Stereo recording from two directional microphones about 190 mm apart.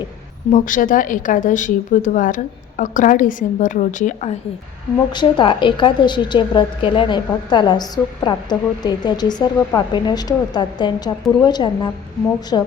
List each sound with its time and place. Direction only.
0.5 s speech: 45° left (ahead or behind)
5.1 s a woman's voice: 25° left (ahead or behind)